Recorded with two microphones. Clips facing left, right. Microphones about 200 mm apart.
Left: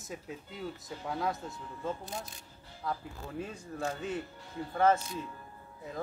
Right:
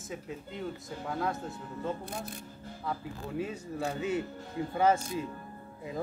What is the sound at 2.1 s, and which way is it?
Speech, 55° right (ahead or behind).